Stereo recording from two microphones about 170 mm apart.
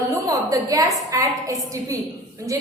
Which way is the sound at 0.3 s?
20° right (ahead or behind).